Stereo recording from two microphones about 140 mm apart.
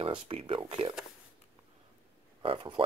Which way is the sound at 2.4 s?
40° right (ahead or behind).